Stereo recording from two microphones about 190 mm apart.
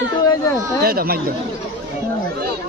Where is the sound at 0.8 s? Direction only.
55° right (ahead or behind).